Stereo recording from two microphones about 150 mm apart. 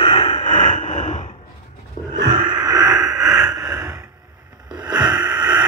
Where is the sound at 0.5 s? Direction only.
55° left (ahead or behind).